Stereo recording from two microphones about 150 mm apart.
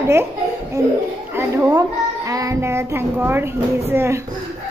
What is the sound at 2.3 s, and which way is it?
Child singing, 20° right (ahead or behind).